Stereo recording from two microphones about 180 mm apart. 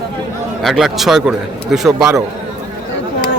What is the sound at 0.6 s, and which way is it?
A man's voice, centre (ahead or behind).